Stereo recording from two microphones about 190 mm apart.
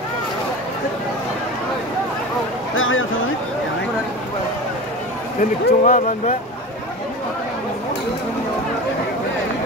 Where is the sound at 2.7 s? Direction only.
90° left.